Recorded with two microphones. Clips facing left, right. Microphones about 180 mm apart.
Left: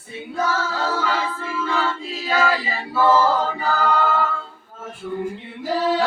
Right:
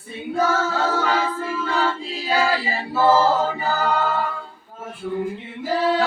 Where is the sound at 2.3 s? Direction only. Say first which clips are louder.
Even; 30° right (ahead or behind).